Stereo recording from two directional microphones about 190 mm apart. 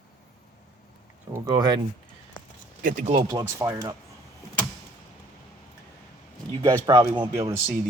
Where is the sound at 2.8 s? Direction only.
45° right (ahead or behind).